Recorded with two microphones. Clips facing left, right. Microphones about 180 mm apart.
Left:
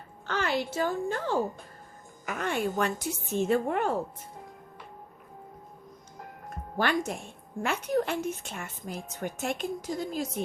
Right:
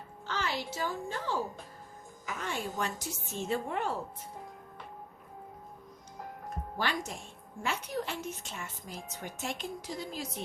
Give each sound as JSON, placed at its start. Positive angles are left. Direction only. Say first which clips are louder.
{"t": 0.3, "sound": "a woman's voice", "louder": "left 6 dB", "side_deg": 55}
{"t": 6.7, "sound": "a woman's voice", "louder": "left 7 dB", "side_deg": 55}